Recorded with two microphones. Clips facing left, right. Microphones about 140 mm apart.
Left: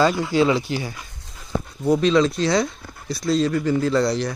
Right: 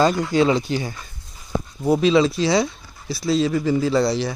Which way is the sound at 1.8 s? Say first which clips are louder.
Right 1 dB; 5° right (ahead or behind).